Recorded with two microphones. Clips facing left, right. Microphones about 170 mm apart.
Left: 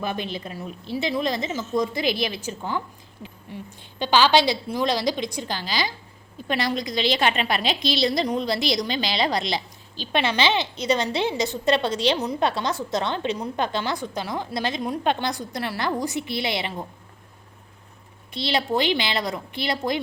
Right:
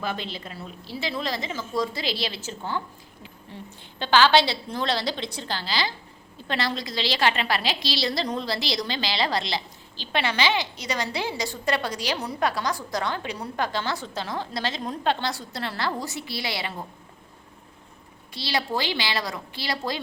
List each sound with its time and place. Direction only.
0.0 s a woman's voice: 20° left (ahead or behind)
18.3 s a woman's voice: 20° left (ahead or behind)